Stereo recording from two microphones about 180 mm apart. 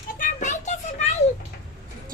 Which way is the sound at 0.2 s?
45° left (ahead or behind).